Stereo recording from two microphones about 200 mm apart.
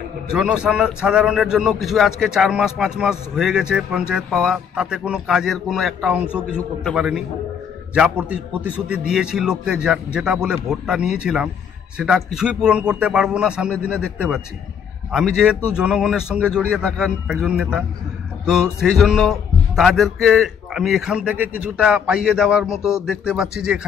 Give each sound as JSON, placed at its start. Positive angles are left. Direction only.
{"t": 0.3, "sound": "a man's voice", "side_deg": -5}